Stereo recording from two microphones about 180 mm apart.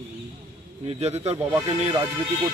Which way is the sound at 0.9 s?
35° right (ahead or behind).